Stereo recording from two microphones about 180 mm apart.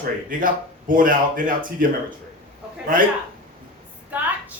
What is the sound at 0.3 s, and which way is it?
Speech, 50° right (ahead or behind).